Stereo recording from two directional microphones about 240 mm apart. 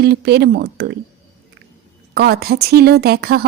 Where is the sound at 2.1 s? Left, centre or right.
Right.